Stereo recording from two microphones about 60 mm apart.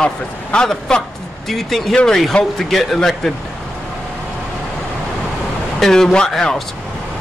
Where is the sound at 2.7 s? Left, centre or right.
Centre.